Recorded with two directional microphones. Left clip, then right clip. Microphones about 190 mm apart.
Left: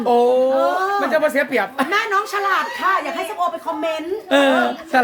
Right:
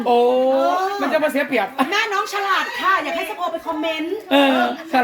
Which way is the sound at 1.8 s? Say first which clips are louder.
Left 1 dB; 25° left (ahead or behind).